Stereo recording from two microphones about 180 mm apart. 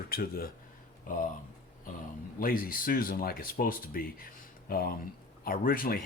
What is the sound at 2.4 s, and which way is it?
Speech, 50° left (ahead or behind).